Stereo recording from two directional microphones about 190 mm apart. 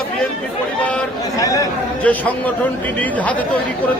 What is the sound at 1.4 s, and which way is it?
Speech, 20° left (ahead or behind).